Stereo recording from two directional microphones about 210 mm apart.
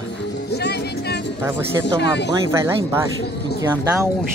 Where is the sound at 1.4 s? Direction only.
15° right (ahead or behind).